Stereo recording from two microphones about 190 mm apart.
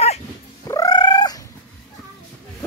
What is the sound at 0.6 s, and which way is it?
Cat, 20° left (ahead or behind).